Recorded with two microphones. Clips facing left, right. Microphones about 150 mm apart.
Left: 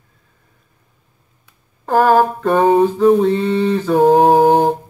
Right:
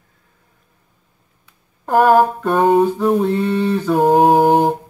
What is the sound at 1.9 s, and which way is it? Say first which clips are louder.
Speech: even; 10° right (ahead or behind).